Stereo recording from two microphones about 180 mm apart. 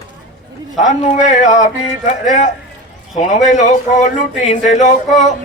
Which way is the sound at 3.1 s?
40° left (ahead or behind).